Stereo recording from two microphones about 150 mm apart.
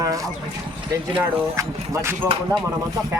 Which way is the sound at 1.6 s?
20° right (ahead or behind).